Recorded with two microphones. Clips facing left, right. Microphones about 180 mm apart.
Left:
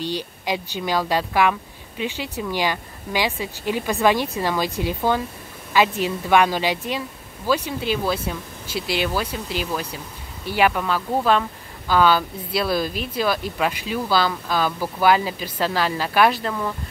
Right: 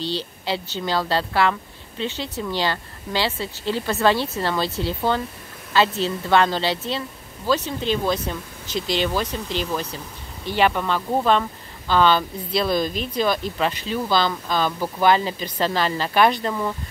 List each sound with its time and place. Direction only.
0.0 s speech: 15° left (ahead or behind)